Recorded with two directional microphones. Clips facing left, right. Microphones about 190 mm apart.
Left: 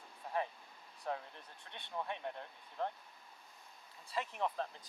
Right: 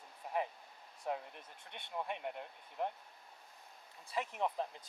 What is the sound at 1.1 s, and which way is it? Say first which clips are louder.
Speech: right 1 dB; 15° right (ahead or behind).